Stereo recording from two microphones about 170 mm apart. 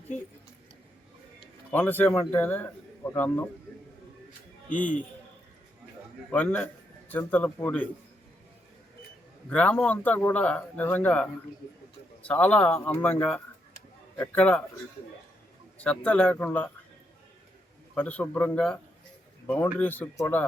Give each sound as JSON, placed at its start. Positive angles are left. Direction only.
{"t": 1.7, "sound": "speech", "side_deg": 10}
{"t": 4.7, "sound": "speech", "side_deg": 50}
{"t": 6.3, "sound": "speech", "side_deg": 10}
{"t": 9.5, "sound": "speech", "side_deg": 10}
{"t": 15.8, "sound": "speech", "side_deg": 10}
{"t": 17.9, "sound": "speech", "side_deg": 10}